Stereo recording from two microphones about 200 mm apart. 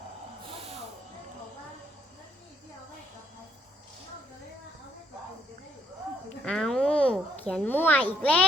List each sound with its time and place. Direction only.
0.4 s snort: 30° right (ahead or behind)
6.4 s a sound: 5° left (ahead or behind)
7.4 s a child's voice: 5° left (ahead or behind)